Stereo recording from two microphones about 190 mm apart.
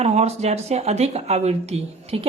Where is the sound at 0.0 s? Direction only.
35° right (ahead or behind).